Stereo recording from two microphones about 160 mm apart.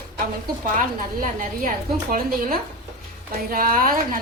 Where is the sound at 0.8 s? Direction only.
55° right (ahead or behind).